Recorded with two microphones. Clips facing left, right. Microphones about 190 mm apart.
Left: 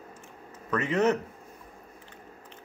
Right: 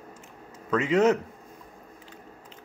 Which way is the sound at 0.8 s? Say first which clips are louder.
Right 4 dB; 90° right.